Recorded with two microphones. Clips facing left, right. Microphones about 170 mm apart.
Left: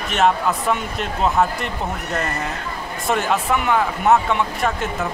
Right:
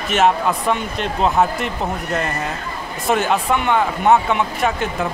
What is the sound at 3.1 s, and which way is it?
Speech, centre (ahead or behind).